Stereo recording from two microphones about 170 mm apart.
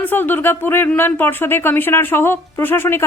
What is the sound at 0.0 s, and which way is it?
Speech, 10° left (ahead or behind).